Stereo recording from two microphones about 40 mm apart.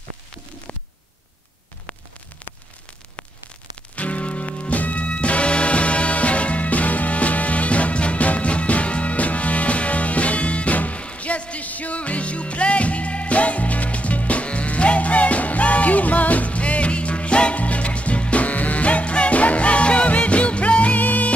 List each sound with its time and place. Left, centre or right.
3.9 s music: left